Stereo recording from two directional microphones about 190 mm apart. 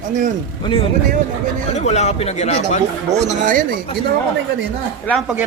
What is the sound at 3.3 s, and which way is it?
Speech, 45° right (ahead or behind).